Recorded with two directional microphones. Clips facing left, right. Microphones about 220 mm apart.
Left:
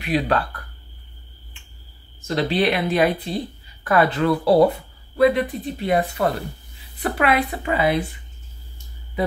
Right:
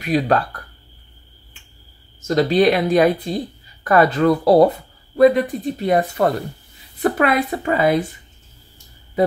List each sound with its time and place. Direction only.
0.0 s speech: 45° right (ahead or behind)
2.2 s speech: 40° right (ahead or behind)